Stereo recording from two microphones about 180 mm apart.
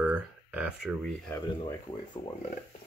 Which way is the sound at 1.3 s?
20° left (ahead or behind).